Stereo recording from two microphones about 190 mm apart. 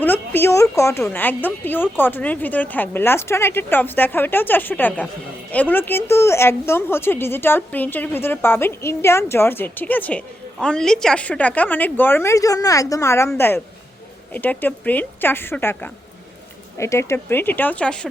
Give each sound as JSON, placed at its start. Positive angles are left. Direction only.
{"t": 0.0, "sound": "a woman's voice", "side_deg": 10}